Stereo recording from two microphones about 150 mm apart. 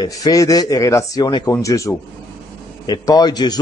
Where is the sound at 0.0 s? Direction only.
25° left (ahead or behind).